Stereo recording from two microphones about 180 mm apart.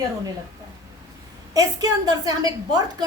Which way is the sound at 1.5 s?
20° right (ahead or behind).